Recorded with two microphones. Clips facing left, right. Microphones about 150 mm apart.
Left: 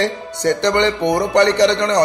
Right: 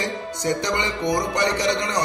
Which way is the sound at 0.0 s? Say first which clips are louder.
Left 7 dB; 70° left (ahead or behind).